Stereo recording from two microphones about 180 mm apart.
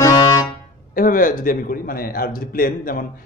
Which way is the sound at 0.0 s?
20° left (ahead or behind).